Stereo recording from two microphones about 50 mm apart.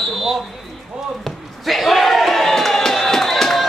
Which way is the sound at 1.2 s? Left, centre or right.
Centre.